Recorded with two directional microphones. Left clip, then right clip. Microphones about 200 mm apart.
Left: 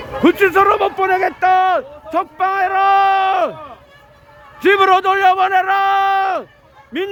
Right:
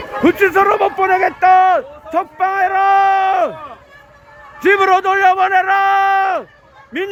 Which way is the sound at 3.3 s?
15° left (ahead or behind).